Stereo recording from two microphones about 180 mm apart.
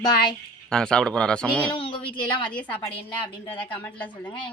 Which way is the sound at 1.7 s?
25° left (ahead or behind).